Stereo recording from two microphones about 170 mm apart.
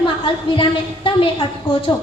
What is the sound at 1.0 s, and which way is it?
Speech, 30° left (ahead or behind).